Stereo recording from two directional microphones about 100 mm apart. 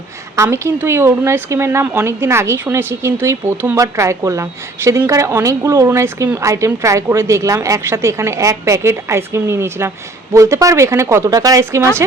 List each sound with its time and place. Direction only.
0.3 s speech: 30° right (ahead or behind)